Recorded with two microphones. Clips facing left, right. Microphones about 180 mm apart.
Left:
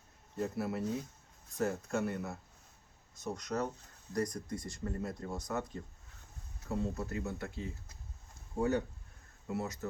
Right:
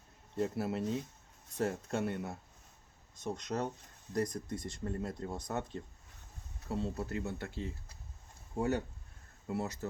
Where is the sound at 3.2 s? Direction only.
25° right (ahead or behind).